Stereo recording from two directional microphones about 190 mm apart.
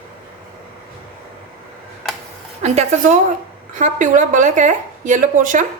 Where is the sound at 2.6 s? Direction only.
35° right (ahead or behind).